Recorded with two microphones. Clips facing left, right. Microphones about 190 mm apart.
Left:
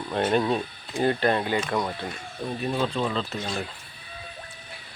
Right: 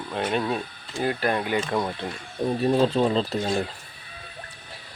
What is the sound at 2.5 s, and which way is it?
Speech, 35° right (ahead or behind).